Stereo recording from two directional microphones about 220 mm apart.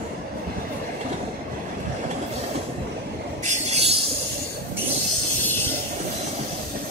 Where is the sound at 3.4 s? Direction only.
30° right (ahead or behind).